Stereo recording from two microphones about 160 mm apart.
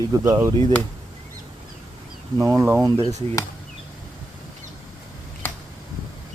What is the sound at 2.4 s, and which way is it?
Speech, 15° right (ahead or behind).